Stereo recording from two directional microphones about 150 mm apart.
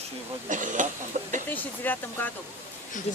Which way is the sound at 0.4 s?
60° right (ahead or behind).